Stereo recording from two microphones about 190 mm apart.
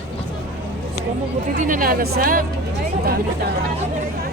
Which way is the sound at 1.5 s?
45° right (ahead or behind).